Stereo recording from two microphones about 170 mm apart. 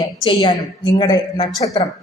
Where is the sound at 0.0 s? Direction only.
25° left (ahead or behind).